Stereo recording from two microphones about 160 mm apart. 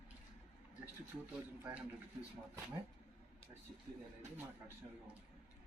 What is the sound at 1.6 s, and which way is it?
Speech, 15° right (ahead or behind).